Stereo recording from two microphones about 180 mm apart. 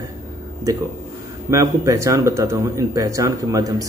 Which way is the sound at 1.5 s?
15° right (ahead or behind).